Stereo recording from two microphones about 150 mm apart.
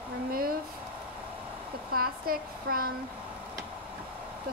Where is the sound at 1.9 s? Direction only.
75° right (ahead or behind).